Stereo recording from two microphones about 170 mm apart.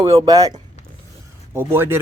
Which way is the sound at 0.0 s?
30° right (ahead or behind).